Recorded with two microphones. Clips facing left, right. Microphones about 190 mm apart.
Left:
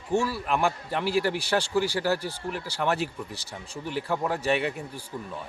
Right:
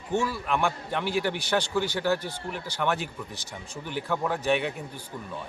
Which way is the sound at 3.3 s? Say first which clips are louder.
Left 1 dB; 35° left (ahead or behind).